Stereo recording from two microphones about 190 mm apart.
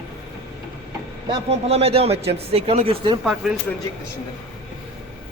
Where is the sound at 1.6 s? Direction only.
35° right (ahead or behind).